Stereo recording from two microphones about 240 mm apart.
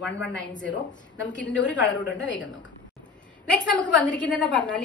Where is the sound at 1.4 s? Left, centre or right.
Left.